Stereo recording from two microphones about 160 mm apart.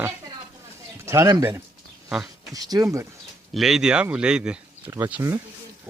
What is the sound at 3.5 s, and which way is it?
Speech, centre (ahead or behind).